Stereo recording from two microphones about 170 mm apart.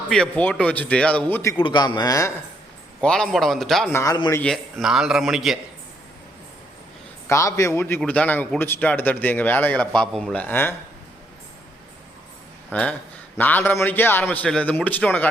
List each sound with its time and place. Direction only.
0.1 s a man's voice: 5° left (ahead or behind)
1.5 s speech: 30° left (ahead or behind)
3.0 s a man's voice: 5° left (ahead or behind)
3.9 s speech: 20° left (ahead or behind)
4.4 s a man's voice: 5° left (ahead or behind)
7.3 s a man's voice: 15° left (ahead or behind)
12.7 s a man's voice: 10° left (ahead or behind)